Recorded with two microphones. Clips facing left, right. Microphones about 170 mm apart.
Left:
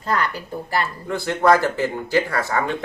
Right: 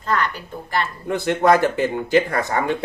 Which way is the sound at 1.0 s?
20° right (ahead or behind).